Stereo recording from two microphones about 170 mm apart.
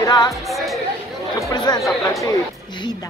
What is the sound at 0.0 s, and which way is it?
Music, 20° left (ahead or behind).